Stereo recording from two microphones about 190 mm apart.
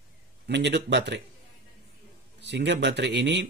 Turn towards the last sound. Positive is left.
turn(degrees=-65)  # may be behind; listen again after turning